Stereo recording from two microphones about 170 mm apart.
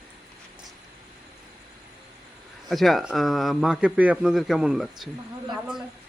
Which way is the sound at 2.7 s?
Centre (ahead or behind).